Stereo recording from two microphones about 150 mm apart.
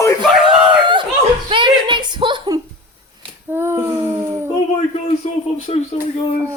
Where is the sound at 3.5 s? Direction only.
15° right (ahead or behind).